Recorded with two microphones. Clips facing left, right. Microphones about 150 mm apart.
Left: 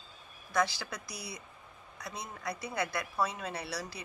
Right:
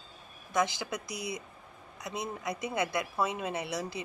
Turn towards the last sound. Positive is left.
turn(degrees=-20)  # may be behind; listen again after turning